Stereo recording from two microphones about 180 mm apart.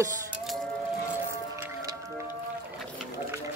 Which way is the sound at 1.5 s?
20° right (ahead or behind).